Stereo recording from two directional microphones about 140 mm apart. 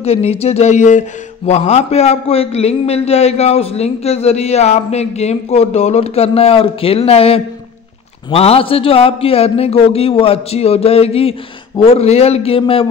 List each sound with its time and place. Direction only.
0.0 s speech: 45° left (ahead or behind)